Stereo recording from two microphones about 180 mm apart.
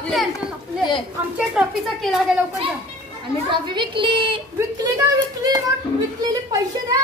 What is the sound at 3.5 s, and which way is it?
A woman's voice, 25° right (ahead or behind).